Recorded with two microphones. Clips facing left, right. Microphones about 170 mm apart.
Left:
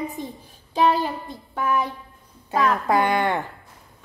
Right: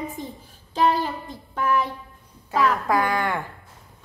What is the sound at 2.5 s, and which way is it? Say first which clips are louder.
Speech: left 1 dB; 20° left (ahead or behind).